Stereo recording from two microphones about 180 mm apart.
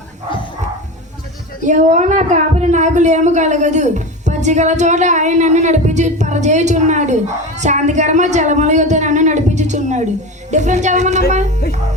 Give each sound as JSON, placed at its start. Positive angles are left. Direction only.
{"t": 1.6, "sound": "speech", "side_deg": -40}